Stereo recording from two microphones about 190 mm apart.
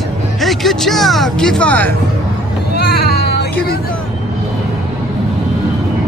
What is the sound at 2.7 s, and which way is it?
Baby cry, 55° left (ahead or behind).